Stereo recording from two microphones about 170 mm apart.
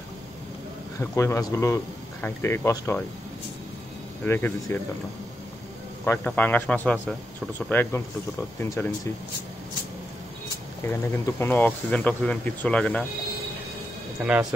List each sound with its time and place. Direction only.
0.9 s speech: 15° left (ahead or behind)
4.2 s speech: 10° left (ahead or behind)
6.0 s speech: 10° left (ahead or behind)
10.8 s speech: 15° left (ahead or behind)